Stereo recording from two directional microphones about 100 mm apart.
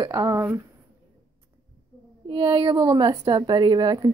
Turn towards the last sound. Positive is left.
turn(degrees=-45)  # may be behind; listen again after turning